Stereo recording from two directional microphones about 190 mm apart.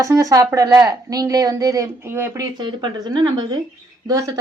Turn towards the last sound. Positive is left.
turn(degrees=-20)  # may be behind; listen again after turning